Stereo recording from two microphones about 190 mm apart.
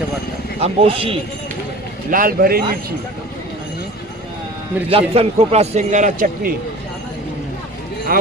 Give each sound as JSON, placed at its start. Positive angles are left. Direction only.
{"t": 0.6, "sound": "speech", "side_deg": -30}
{"t": 2.0, "sound": "a man's voice", "side_deg": -45}
{"t": 4.9, "sound": "a man's voice", "side_deg": -30}
{"t": 8.1, "sound": "a man's voice", "side_deg": -50}